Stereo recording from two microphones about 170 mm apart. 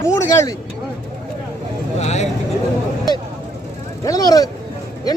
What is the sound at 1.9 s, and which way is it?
Vehicle, 40° left (ahead or behind).